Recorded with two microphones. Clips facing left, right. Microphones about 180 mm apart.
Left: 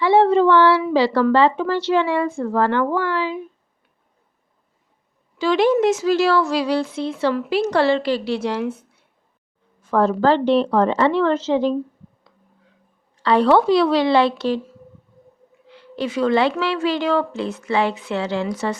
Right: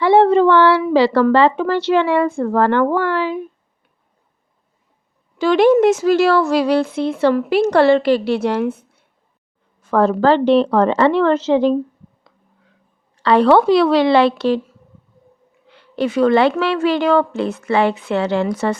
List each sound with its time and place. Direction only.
0.0 s speech: 55° right (ahead or behind)
5.4 s speech: 55° right (ahead or behind)
9.8 s a woman's voice: 70° right (ahead or behind)
13.2 s a woman's voice: 65° right (ahead or behind)
15.7 s speech: 55° right (ahead or behind)